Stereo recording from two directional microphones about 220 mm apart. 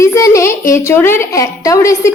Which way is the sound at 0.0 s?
15° left (ahead or behind).